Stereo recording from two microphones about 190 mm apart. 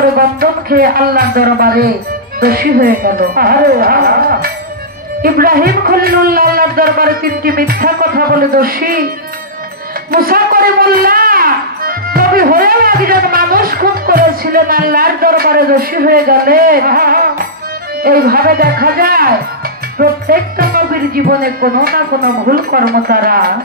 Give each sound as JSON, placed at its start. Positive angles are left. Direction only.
{"t": 0.1, "sound": "a man's voice", "side_deg": -50}
{"t": 10.1, "sound": "a man's voice", "side_deg": -50}